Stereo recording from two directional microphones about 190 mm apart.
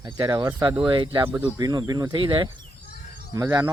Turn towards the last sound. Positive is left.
turn(degrees=-15)  # may be behind; listen again after turning